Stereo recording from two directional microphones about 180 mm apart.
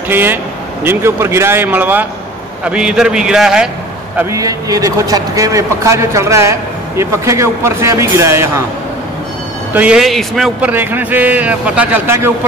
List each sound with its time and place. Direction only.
0.1 s a man's voice: 10° right (ahead or behind)
4.2 s a man's voice: 15° right (ahead or behind)
9.8 s a man's voice: 5° right (ahead or behind)